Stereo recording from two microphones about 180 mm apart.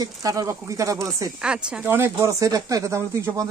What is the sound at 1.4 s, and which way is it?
Speech, 5° right (ahead or behind).